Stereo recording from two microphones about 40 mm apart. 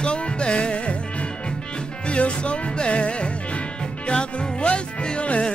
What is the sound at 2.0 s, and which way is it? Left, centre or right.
Music, left.